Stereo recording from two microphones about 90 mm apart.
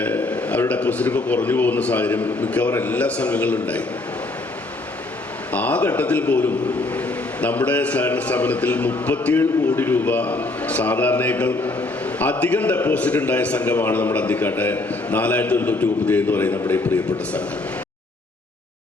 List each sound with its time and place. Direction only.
0.0 s a sound: 15° left (ahead or behind)
0.7 s a man's voice: 15° left (ahead or behind)
5.5 s a man's voice: 15° left (ahead or behind)